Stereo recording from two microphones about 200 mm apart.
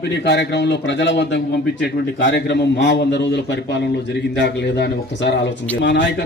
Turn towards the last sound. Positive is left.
turn(degrees=60)  # may be behind; listen again after turning